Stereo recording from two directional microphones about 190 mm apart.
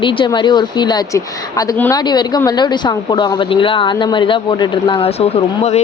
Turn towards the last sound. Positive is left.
turn(degrees=35)  # may be behind; listen again after turning